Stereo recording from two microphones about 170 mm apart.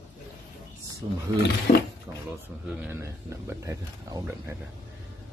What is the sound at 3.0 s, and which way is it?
Speech, 15° right (ahead or behind).